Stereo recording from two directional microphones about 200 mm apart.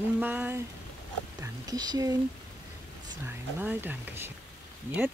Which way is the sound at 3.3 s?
10° right (ahead or behind).